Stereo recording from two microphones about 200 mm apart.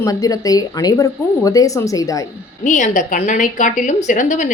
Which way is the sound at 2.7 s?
40° left (ahead or behind).